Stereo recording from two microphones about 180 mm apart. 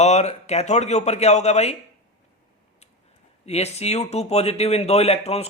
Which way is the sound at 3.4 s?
35° left (ahead or behind).